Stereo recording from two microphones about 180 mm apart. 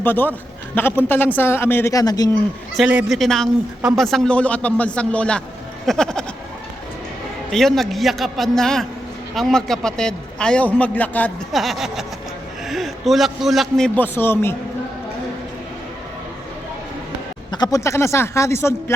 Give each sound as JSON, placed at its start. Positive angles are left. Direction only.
{"t": 0.0, "sound": "a man's voice", "side_deg": 10}
{"t": 2.7, "sound": "a man's voice", "side_deg": -5}
{"t": 5.8, "sound": "a sound", "side_deg": 0}
{"t": 7.5, "sound": "a man's voice", "side_deg": 0}
{"t": 17.5, "sound": "a man's voice", "side_deg": 20}